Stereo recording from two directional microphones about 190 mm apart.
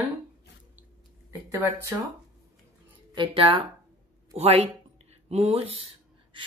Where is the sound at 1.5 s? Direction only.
10° right (ahead or behind).